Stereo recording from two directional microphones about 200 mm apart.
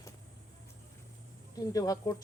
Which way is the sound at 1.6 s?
15° left (ahead or behind).